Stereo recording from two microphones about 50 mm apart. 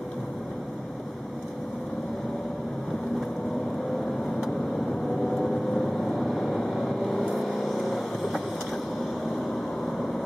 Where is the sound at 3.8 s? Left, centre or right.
Centre.